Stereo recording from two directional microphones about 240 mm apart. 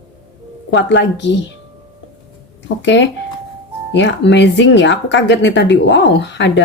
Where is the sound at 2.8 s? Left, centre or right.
Left.